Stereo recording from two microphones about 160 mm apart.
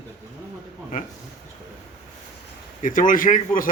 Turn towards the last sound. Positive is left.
turn(degrees=60)  # may be behind; listen again after turning